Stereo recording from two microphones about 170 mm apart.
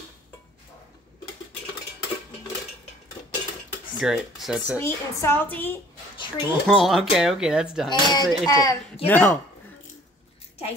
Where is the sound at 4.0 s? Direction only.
Centre (ahead or behind).